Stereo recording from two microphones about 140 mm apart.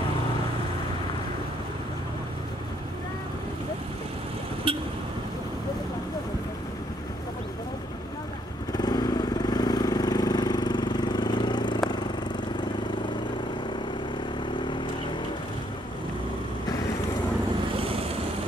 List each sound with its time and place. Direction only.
4.7 s vehicle: 40° right (ahead or behind)
8.7 s vehicle: 30° left (ahead or behind)
17.7 s vehicle: 40° right (ahead or behind)